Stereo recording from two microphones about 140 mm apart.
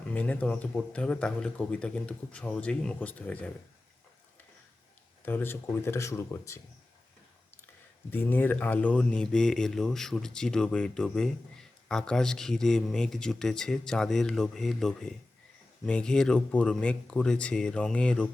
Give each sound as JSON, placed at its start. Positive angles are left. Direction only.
{"t": 0.1, "sound": "a man's voice", "side_deg": 10}
{"t": 5.2, "sound": "speech", "side_deg": 15}
{"t": 8.1, "sound": "a man's voice", "side_deg": 15}